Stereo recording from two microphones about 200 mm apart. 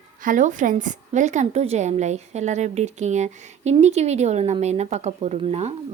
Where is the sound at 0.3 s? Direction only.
40° right (ahead or behind).